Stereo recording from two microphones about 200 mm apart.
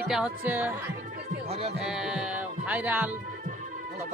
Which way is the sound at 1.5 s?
30° right (ahead or behind).